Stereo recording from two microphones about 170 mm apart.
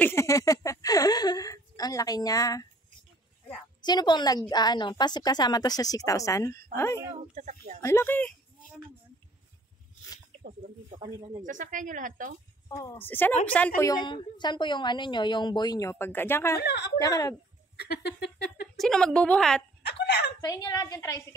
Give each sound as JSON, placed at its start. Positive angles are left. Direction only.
{"t": 0.0, "sound": "a sound", "side_deg": 15}
{"t": 3.8, "sound": "a woman's voice", "side_deg": 25}
{"t": 7.1, "sound": "a sound", "side_deg": -45}
{"t": 7.8, "sound": "speech", "side_deg": 15}
{"t": 11.4, "sound": "speech", "side_deg": -50}
{"t": 12.6, "sound": "a woman's voice", "side_deg": 20}
{"t": 13.7, "sound": "a woman's voice", "side_deg": 20}
{"t": 16.5, "sound": "a woman's voice", "side_deg": 80}
{"t": 17.0, "sound": "a woman's voice", "side_deg": 20}
{"t": 17.7, "sound": "a sound", "side_deg": 75}
{"t": 18.8, "sound": "a woman's voice", "side_deg": 5}
{"t": 19.8, "sound": "speech", "side_deg": 80}
{"t": 20.3, "sound": "a woman's voice", "side_deg": 25}